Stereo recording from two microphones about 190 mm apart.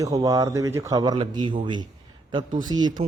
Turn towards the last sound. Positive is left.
turn(degrees=-20)  # may be behind; listen again after turning